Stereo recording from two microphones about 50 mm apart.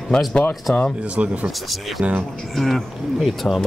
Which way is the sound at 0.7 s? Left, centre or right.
Left.